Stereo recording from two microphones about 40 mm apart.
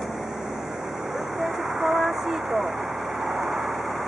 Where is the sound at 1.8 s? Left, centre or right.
Centre.